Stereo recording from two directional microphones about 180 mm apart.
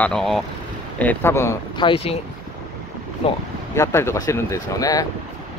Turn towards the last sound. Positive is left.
turn(degrees=20)  # may be behind; listen again after turning